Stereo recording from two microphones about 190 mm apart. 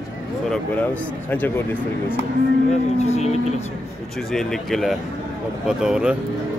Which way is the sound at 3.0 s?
35° left (ahead or behind).